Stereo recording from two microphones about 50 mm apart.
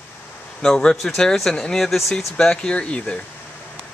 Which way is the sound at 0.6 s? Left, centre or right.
Centre.